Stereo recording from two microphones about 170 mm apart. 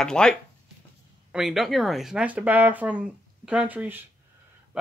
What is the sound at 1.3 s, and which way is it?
Speech, 5° right (ahead or behind).